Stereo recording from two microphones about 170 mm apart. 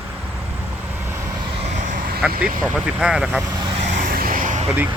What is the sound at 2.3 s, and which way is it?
Speech, 60° right (ahead or behind).